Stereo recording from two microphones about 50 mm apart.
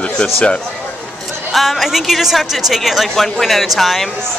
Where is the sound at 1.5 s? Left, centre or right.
Centre.